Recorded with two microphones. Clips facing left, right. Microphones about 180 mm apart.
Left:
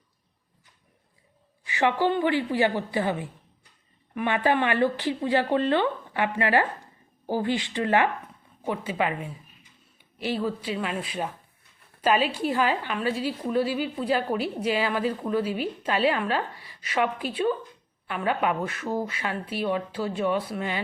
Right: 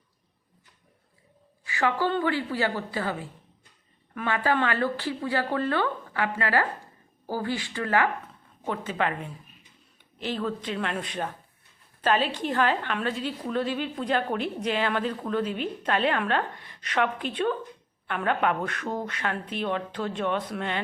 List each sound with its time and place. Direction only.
1.6 s a woman's voice: 20° left (ahead or behind)